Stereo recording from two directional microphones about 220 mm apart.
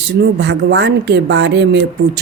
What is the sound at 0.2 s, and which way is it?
Speech, 50° right (ahead or behind).